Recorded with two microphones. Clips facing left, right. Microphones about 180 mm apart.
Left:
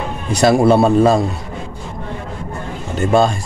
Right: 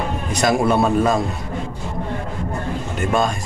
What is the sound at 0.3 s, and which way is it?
Speech, 30° left (ahead or behind).